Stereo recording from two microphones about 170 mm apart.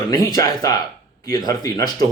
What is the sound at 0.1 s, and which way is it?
Speech, 20° left (ahead or behind).